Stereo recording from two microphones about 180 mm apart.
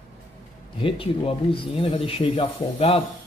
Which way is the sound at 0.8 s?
30° left (ahead or behind).